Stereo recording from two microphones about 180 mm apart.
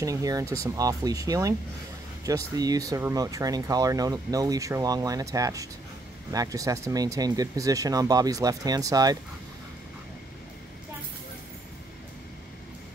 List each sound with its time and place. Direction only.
0.0 s speech: 20° right (ahead or behind)